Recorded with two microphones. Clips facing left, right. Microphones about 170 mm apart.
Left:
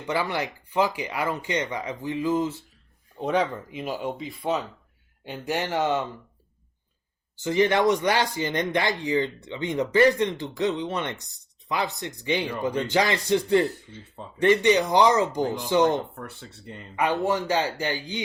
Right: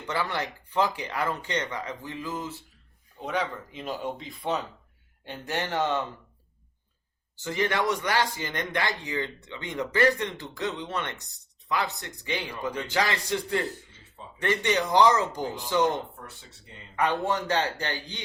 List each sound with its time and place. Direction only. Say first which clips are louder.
0.1 s speech: left 3 dB; 15° left (ahead or behind)
3.2 s speech: left 6 dB; 30° left (ahead or behind)
3.7 s speech: left 3 dB; 10° left (ahead or behind)
7.4 s speech: left 6 dB; 20° left (ahead or behind)
16.1 s speech: left 7 dB; 60° left (ahead or behind)
16.9 s speech: left 2 dB; 10° left (ahead or behind)